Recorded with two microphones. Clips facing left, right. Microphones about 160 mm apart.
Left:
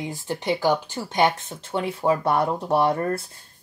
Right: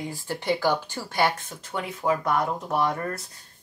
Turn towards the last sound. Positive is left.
turn(degrees=30)  # may be behind; listen again after turning